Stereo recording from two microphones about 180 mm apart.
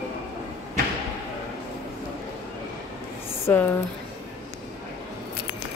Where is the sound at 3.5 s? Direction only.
10° left (ahead or behind).